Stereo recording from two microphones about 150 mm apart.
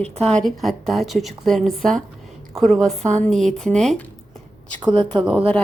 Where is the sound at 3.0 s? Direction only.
50° right (ahead or behind).